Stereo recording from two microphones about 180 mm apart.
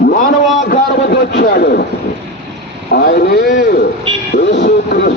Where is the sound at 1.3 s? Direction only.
70° left (ahead or behind).